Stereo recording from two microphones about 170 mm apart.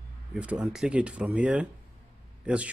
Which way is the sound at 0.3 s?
5° right (ahead or behind).